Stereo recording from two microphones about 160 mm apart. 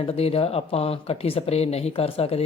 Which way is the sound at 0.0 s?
40° left (ahead or behind).